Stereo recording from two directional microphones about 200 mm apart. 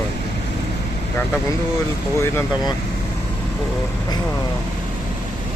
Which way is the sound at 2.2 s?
15° left (ahead or behind).